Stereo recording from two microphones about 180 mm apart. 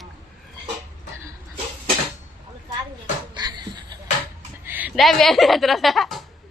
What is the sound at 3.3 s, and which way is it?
Laughter, 25° right (ahead or behind).